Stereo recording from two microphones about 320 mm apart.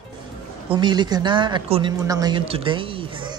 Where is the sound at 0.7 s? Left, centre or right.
Centre.